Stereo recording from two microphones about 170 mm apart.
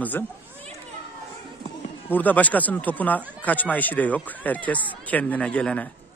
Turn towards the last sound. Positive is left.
turn(degrees=5)  # may be behind; listen again after turning